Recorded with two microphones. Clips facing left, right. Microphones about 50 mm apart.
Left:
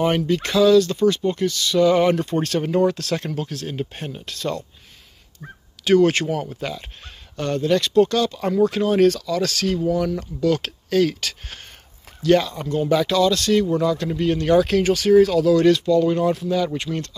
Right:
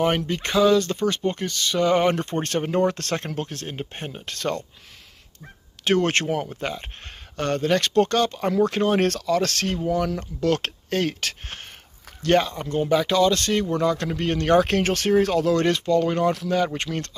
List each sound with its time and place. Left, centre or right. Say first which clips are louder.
0.3 s speech: left 5 dB; right
4.3 s speech: even; right
5.9 s speech: left 5 dB; right
7.3 s speech: left 2 dB; right
12.8 s speech: left 1 dB; centre; by 13.7 s right
13.7 s speech: left 2 dB; right